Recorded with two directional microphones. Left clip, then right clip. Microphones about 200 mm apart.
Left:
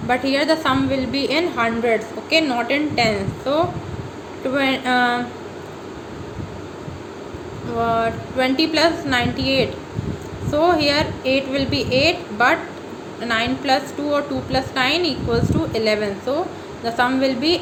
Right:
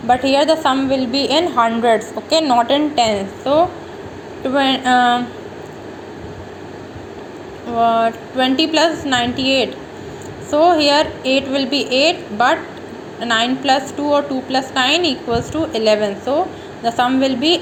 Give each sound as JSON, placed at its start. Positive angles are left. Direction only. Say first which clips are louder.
{"t": 0.1, "sound": "a woman's voice", "louder": "right 5 dB", "side_deg": -20}
{"t": 7.8, "sound": "a woman's voice", "louder": "right 5 dB", "side_deg": -20}